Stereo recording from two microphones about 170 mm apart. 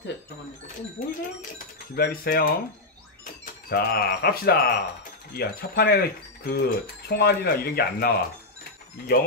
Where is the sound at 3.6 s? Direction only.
65° left (ahead or behind).